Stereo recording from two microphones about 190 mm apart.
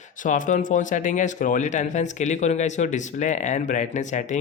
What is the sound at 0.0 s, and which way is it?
Speech, 45° left (ahead or behind).